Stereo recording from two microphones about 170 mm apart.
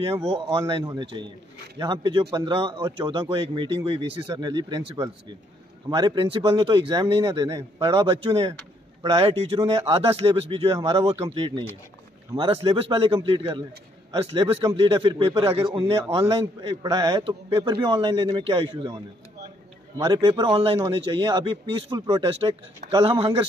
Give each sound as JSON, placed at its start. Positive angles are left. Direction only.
{"t": 0.0, "sound": "speech", "side_deg": -30}